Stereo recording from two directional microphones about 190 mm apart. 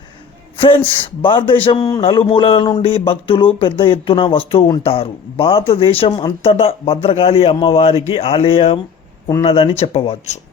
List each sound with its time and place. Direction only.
1.2 s a man's voice: 25° left (ahead or behind)